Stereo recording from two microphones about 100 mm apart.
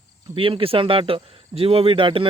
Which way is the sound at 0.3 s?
65° right (ahead or behind).